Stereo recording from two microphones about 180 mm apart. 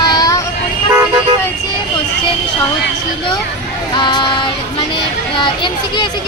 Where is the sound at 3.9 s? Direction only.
25° left (ahead or behind).